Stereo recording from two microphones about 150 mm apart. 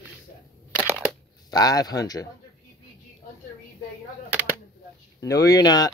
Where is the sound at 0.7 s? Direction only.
15° right (ahead or behind).